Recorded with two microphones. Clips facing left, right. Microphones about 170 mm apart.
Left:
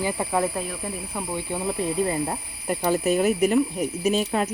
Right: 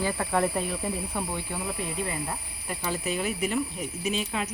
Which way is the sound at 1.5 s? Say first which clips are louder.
Left 6 dB; 20° left (ahead or behind).